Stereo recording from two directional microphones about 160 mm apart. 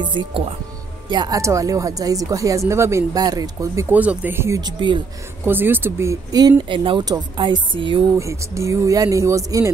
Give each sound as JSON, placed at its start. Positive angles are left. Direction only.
{"t": 0.0, "sound": "speech", "side_deg": -30}
{"t": 3.9, "sound": "speech", "side_deg": -10}
{"t": 4.6, "sound": "speech", "side_deg": -30}
{"t": 5.4, "sound": "speech", "side_deg": -15}
{"t": 6.7, "sound": "speech", "side_deg": -30}
{"t": 8.2, "sound": "speech", "side_deg": -20}